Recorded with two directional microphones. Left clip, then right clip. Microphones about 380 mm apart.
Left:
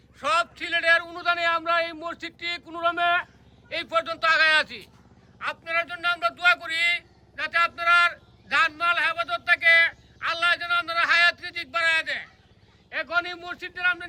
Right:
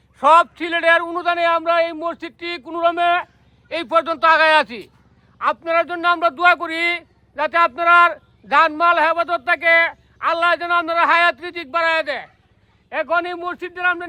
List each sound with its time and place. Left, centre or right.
0.2 s a man's voice: centre